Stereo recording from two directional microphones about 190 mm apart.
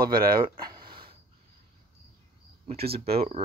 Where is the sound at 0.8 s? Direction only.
25° right (ahead or behind).